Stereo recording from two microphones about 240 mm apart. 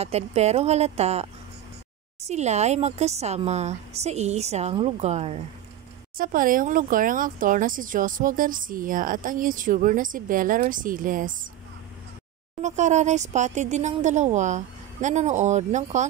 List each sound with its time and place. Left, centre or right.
0.0 s speech: right
2.2 s speech: right
12.6 s speech: right